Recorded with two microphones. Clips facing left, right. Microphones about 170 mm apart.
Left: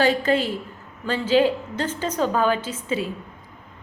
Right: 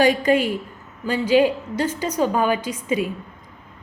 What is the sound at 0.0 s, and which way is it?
A woman's voice, 15° right (ahead or behind).